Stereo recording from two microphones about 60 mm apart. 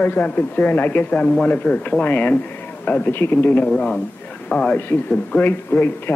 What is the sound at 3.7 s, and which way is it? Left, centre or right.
A man's voice, centre.